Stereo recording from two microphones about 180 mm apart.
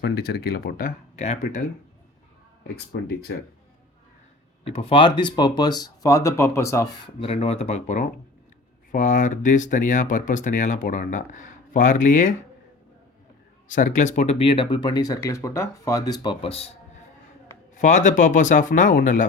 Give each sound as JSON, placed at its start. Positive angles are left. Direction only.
{"t": 0.0, "sound": "speech", "side_deg": 60}
{"t": 2.7, "sound": "speech", "side_deg": 60}
{"t": 4.6, "sound": "speech", "side_deg": 30}
{"t": 7.2, "sound": "speech", "side_deg": 35}
{"t": 13.7, "sound": "speech", "side_deg": 45}
{"t": 17.7, "sound": "speech", "side_deg": 40}